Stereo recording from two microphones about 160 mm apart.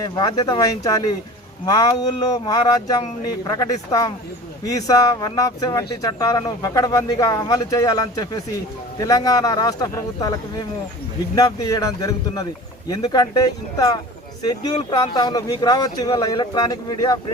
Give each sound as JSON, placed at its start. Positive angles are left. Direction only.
{"t": 0.0, "sound": "speech", "side_deg": 25}